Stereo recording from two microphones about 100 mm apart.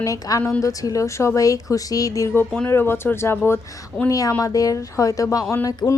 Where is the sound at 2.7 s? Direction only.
25° left (ahead or behind).